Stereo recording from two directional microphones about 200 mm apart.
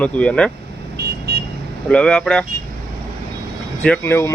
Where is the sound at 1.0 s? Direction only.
55° right (ahead or behind).